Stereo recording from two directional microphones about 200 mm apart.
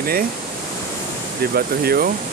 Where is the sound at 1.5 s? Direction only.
50° right (ahead or behind).